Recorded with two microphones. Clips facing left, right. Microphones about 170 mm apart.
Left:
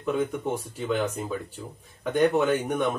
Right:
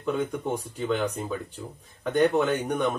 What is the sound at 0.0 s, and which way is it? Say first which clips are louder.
Speech: left 1 dB; 5° left (ahead or behind).